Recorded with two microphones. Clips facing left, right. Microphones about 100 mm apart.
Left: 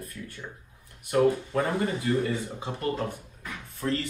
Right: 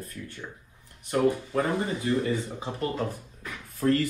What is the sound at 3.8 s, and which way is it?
Speech, 50° right (ahead or behind).